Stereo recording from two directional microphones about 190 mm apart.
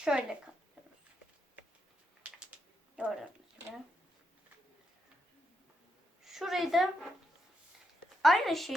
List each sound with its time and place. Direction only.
0.0 s a woman's voice: 5° right (ahead or behind)
2.3 s typing: 5° right (ahead or behind)
2.9 s speech: centre (ahead or behind)
6.2 s a woman's voice: centre (ahead or behind)
8.2 s a woman's voice: centre (ahead or behind)